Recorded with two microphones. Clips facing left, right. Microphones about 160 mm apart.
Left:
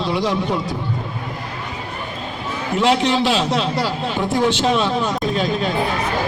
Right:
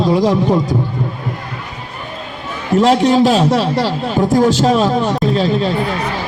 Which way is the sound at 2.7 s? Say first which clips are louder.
Right 6 dB; 40° right (ahead or behind).